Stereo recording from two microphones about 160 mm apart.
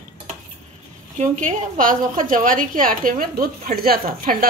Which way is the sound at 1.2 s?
55° right (ahead or behind).